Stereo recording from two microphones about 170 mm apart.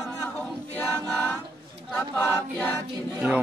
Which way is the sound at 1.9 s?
15° left (ahead or behind).